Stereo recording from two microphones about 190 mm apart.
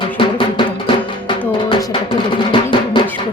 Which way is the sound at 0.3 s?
25° left (ahead or behind).